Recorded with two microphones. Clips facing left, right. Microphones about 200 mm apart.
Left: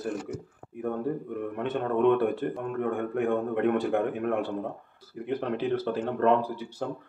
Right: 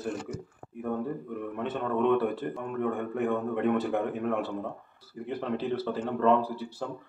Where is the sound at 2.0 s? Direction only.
50° left (ahead or behind).